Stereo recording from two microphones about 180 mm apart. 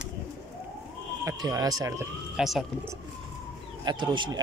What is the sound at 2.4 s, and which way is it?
Speech, centre (ahead or behind).